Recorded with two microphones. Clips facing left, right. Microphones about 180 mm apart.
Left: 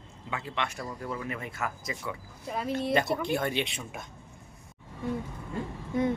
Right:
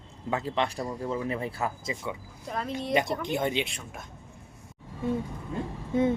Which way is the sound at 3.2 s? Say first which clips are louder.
Right 1 dB; 20° right (ahead or behind).